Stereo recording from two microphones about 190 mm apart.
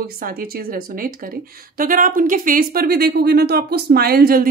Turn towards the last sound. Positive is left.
turn(degrees=-55)  # may be behind; listen again after turning